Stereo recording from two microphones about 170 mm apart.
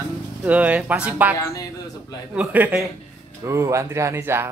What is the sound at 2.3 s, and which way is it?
Speech, 10° right (ahead or behind).